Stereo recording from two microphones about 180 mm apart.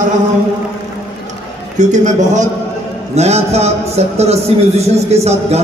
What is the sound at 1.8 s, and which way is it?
A man's voice, 40° right (ahead or behind).